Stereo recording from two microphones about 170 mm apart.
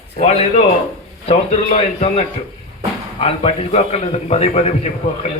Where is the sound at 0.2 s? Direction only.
40° left (ahead or behind).